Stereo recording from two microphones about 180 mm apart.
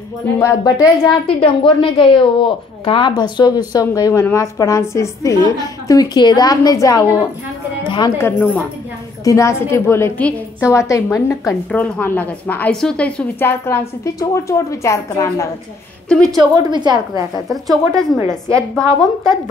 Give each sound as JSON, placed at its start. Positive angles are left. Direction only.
{"t": 0.4, "sound": "a woman's voice", "side_deg": 15}
{"t": 16.3, "sound": "a woman's voice", "side_deg": -20}
{"t": 17.5, "sound": "a woman's voice", "side_deg": 0}